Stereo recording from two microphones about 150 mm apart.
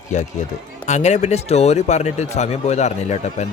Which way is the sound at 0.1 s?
55° left (ahead or behind).